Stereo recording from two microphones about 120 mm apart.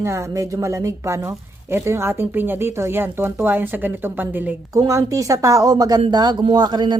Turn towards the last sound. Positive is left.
turn(degrees=-35)  # may be behind; listen again after turning